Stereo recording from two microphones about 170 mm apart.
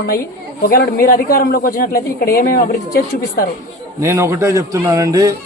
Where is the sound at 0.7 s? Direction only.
65° left (ahead or behind).